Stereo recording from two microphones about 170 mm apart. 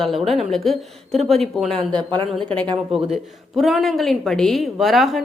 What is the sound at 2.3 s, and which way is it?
A woman's voice, 5° left (ahead or behind).